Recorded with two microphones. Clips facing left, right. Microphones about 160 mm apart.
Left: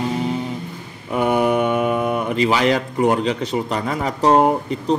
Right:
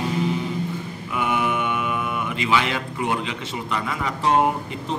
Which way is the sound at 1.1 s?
40° left (ahead or behind).